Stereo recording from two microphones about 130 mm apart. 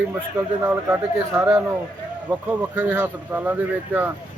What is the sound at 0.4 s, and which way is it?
Speech, 10° right (ahead or behind).